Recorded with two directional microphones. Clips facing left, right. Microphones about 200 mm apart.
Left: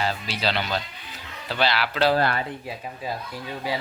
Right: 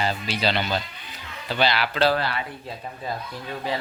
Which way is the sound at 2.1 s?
40° left (ahead or behind).